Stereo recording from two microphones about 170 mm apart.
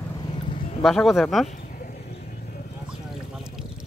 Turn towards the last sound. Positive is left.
turn(degrees=-5)  # may be behind; listen again after turning